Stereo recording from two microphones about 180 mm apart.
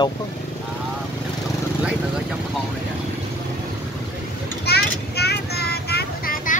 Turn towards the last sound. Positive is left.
turn(degrees=55)  # may be behind; listen again after turning